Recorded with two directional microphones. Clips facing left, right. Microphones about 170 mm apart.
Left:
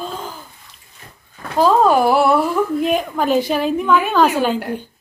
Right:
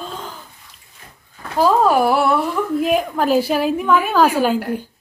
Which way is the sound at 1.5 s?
5° right (ahead or behind).